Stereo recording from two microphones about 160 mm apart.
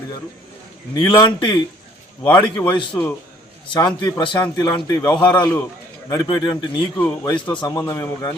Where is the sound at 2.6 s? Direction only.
10° left (ahead or behind).